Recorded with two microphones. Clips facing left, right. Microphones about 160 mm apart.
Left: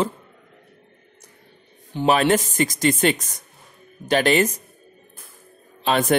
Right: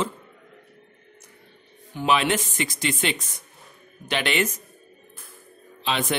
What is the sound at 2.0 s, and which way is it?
Speech, 40° left (ahead or behind).